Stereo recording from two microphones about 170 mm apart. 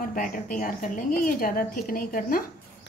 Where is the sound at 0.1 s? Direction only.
50° left (ahead or behind).